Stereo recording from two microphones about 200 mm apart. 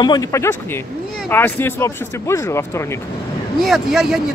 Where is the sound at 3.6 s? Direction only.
Centre (ahead or behind).